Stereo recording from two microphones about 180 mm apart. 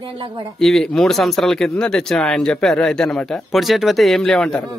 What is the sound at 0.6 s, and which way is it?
Speech, centre (ahead or behind).